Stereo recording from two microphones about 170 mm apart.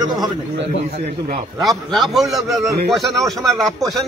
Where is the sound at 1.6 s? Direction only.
Centre (ahead or behind).